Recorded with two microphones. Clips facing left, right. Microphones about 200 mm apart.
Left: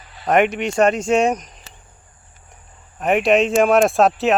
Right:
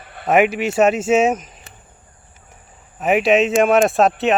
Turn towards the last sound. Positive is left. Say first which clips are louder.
# even
turn(degrees=0)  # may be behind; listen again after turning